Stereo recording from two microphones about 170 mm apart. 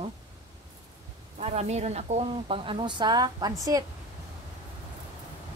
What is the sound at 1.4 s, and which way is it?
Speech, 40° right (ahead or behind).